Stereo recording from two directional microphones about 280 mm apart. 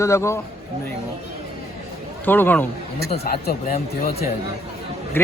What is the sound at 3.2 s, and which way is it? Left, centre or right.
Speech, left.